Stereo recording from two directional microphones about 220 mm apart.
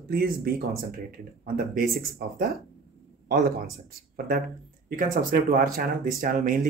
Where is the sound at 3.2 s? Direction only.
45° right (ahead or behind).